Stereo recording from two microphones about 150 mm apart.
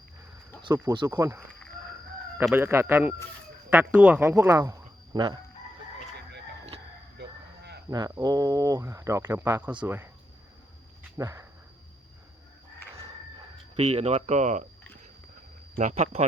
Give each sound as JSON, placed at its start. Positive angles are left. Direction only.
{"t": 0.9, "sound": "speech", "side_deg": -20}
{"t": 2.4, "sound": "speech", "side_deg": -15}
{"t": 7.2, "sound": "a sound", "side_deg": -90}
{"t": 7.9, "sound": "speech", "side_deg": -25}
{"t": 11.2, "sound": "speech", "side_deg": -20}
{"t": 13.7, "sound": "speech", "side_deg": -45}
{"t": 15.8, "sound": "speech", "side_deg": -50}